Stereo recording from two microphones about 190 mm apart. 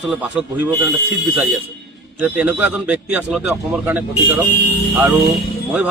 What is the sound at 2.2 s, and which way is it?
A man's voice, 10° right (ahead or behind).